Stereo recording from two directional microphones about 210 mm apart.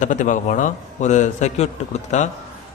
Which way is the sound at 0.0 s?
35° left (ahead or behind).